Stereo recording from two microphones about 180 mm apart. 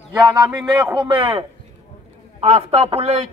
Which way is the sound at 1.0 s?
30° right (ahead or behind).